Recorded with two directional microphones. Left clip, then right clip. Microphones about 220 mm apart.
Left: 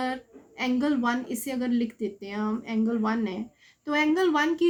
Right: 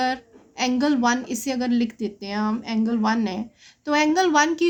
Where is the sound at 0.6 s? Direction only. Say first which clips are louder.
Right 5 dB; 45° right (ahead or behind).